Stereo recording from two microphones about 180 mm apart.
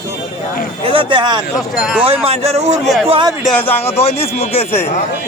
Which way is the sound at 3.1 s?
25° right (ahead or behind).